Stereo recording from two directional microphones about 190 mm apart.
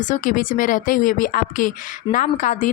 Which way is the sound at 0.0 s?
40° left (ahead or behind).